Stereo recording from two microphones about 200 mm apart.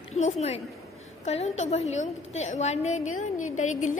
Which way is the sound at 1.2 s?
30° left (ahead or behind).